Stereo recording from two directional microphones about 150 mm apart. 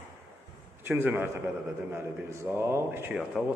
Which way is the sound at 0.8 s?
15° right (ahead or behind).